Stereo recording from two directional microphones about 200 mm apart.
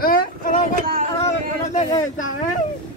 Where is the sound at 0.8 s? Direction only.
45° right (ahead or behind).